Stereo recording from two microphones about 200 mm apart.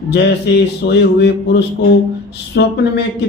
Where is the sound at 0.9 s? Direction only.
55° left (ahead or behind).